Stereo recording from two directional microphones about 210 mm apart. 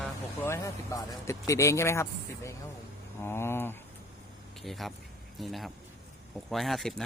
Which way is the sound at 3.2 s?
10° left (ahead or behind).